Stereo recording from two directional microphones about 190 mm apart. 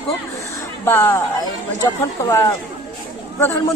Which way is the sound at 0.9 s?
10° left (ahead or behind).